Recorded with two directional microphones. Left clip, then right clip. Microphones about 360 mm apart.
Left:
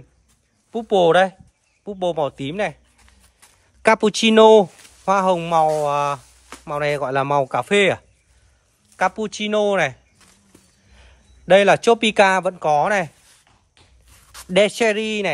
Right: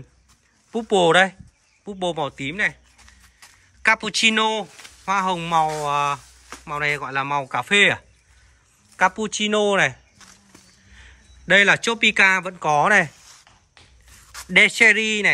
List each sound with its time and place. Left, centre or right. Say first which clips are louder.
0.7 s speech: left 2 dB; centre
3.3 s a sound: right 4 dB; centre
5.0 s speech: left 4 dB; centre
14.3 s a man's voice: right 1 dB; centre